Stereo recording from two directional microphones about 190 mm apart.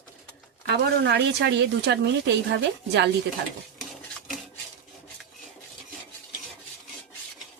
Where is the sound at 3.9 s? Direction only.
Centre (ahead or behind).